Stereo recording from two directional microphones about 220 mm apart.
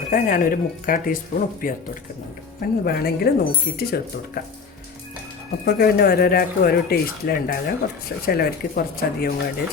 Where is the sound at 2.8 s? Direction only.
45° left (ahead or behind).